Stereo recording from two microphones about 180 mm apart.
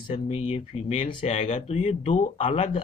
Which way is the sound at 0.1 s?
35° left (ahead or behind).